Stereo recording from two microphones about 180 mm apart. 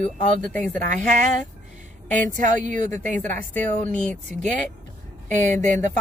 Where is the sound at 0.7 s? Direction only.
45° right (ahead or behind).